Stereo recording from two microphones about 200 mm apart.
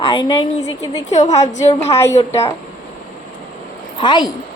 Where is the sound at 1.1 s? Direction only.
35° left (ahead or behind).